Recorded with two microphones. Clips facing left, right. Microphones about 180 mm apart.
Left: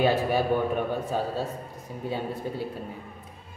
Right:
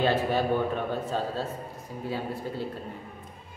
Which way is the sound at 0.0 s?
10° left (ahead or behind).